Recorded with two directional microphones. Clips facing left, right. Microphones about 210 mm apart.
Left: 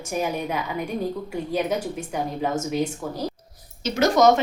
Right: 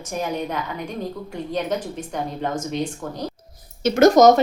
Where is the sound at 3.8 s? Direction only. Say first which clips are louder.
Right 5 dB; 50° right (ahead or behind).